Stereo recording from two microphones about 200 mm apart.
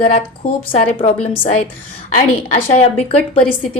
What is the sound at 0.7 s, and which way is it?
Speech, 30° left (ahead or behind).